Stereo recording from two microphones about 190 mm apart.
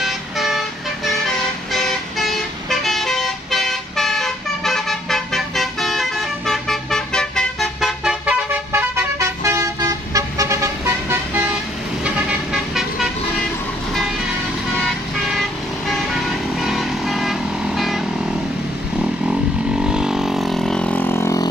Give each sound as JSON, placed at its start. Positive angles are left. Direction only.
{"t": 0.0, "sound": "vehicle", "side_deg": 0}
{"t": 14.8, "sound": "vehicle", "side_deg": 0}
{"t": 19.8, "sound": "vehicle", "side_deg": -5}